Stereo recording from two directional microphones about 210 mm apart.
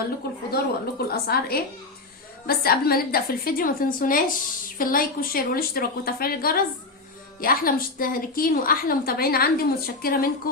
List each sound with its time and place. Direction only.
0.5 s a woman's voice: 45° left (ahead or behind)